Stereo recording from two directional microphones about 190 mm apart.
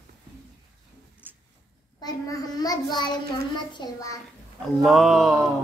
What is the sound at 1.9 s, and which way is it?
A child's voice, 20° left (ahead or behind).